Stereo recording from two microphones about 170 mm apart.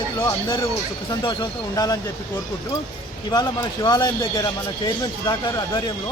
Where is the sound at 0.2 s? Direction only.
20° left (ahead or behind).